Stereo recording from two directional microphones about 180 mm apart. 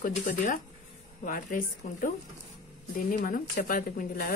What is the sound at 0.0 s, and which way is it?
Speech, 50° left (ahead or behind).